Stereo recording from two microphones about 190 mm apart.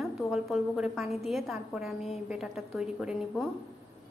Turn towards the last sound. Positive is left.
turn(degrees=-5)  # may be behind; listen again after turning